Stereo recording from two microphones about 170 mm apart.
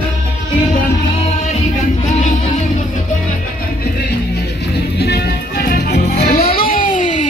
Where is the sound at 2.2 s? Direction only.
45° left (ahead or behind).